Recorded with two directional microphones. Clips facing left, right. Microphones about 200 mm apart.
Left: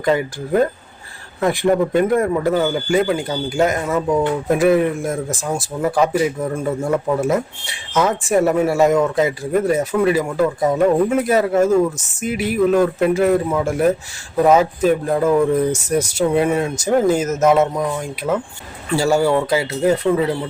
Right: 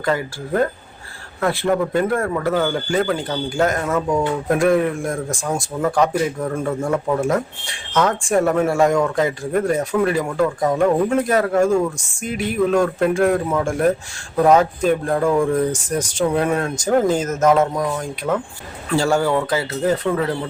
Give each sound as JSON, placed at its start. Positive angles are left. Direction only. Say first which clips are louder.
{"t": 0.0, "sound": "a man's voice", "louder": "left 3 dB", "side_deg": 20}